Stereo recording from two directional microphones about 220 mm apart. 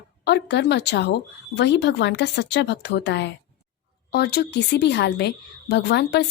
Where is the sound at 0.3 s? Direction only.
50° left (ahead or behind).